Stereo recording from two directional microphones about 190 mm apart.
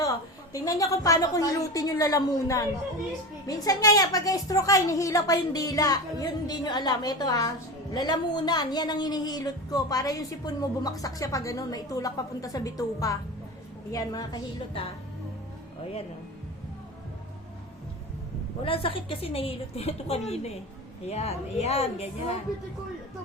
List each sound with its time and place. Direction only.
0.5 s a woman's voice: 20° left (ahead or behind)
18.6 s a woman's voice: 30° left (ahead or behind)